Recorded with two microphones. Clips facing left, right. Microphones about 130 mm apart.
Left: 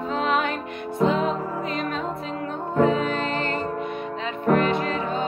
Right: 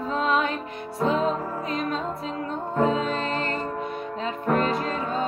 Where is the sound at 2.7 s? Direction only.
35° right (ahead or behind).